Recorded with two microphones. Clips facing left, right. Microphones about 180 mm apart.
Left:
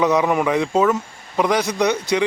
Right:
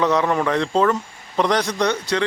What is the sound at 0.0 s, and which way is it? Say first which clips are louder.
A man's voice: left 2 dB; 10° left (ahead or behind).